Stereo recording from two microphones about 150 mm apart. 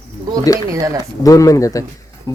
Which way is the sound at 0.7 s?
25° right (ahead or behind).